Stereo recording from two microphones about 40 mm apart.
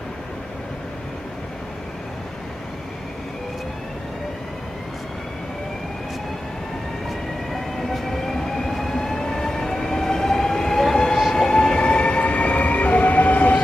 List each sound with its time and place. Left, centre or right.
7.9 s train: centre; by 13.6 s left